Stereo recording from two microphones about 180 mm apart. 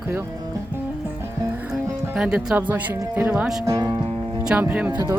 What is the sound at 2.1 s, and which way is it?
Speech, 5° right (ahead or behind).